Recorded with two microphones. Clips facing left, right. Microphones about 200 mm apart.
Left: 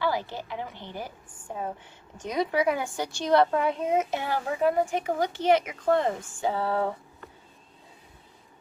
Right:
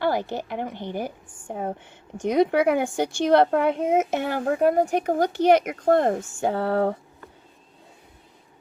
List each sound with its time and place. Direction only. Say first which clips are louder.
0.0 s a woman's voice: right 4 dB; 55° right (ahead or behind)
4.1 s speech: right 5 dB; 55° right (ahead or behind)
5.1 s a child's voice: right 5 dB; 40° right (ahead or behind); by 6.9 s 60° right (ahead or behind)